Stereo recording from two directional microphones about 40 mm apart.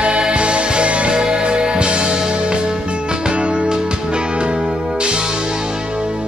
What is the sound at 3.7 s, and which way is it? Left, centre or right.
Music, centre.